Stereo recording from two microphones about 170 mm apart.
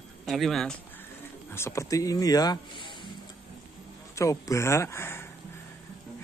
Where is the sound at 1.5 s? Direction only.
15° left (ahead or behind).